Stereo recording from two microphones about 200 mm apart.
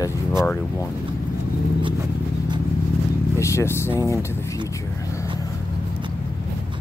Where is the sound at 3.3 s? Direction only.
15° left (ahead or behind).